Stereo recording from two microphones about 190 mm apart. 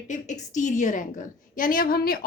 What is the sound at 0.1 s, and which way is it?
A woman's voice, 40° left (ahead or behind).